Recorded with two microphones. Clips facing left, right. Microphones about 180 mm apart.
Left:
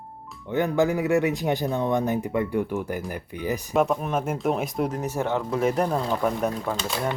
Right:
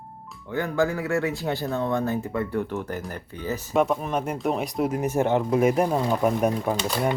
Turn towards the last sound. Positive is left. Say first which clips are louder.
# right 3 dB
turn(degrees=-5)  # may be behind; listen again after turning